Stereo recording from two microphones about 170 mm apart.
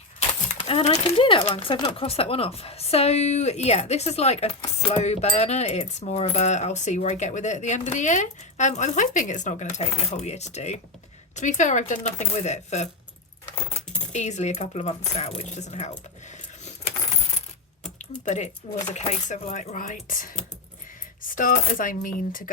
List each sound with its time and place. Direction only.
0.2 s speech: 40° left (ahead or behind)
4.8 s coin: 40° left (ahead or behind)
9.7 s speech: 40° left (ahead or behind)
11.3 s coin: 45° left (ahead or behind)
14.1 s speech: 45° left (ahead or behind)
15.4 s coin: 45° left (ahead or behind)
18.3 s coin: 40° left (ahead or behind)
22.0 s speech: 55° left (ahead or behind)